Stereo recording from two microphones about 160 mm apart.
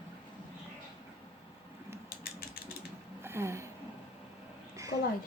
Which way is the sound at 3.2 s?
15° right (ahead or behind).